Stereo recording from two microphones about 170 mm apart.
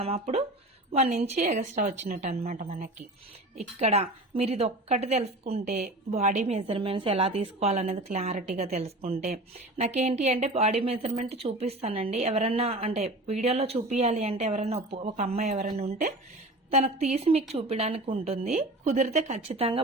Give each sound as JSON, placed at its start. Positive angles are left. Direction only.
{"t": 0.0, "sound": "a woman's voice", "side_deg": -40}